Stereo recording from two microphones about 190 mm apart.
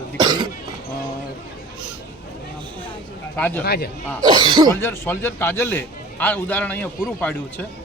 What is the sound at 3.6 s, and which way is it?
Speech, 55° left (ahead or behind).